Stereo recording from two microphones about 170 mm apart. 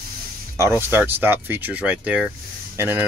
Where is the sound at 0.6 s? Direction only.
15° right (ahead or behind).